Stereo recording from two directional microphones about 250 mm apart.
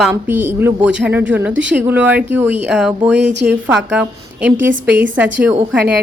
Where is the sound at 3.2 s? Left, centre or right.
Right.